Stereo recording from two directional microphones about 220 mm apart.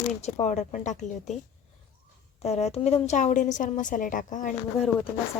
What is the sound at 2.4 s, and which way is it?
A woman's voice, 30° left (ahead or behind).